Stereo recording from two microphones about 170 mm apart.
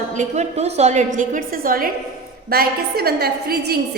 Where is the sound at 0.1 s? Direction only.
45° right (ahead or behind).